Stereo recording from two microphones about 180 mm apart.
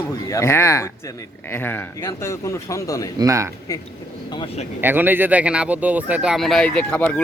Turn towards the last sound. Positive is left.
turn(degrees=10)  # may be behind; listen again after turning